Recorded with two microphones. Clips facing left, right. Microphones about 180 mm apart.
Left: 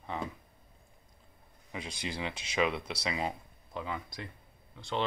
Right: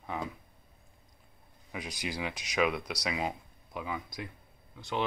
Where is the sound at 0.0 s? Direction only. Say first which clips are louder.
Right 1 dB; 5° right (ahead or behind).